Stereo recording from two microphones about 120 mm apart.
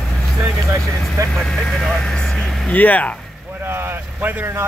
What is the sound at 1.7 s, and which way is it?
Speech, 5° left (ahead or behind).